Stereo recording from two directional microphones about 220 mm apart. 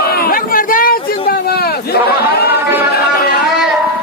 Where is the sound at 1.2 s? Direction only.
45° left (ahead or behind).